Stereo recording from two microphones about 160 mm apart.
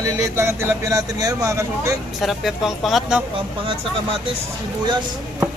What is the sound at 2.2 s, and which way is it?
Speech, centre (ahead or behind).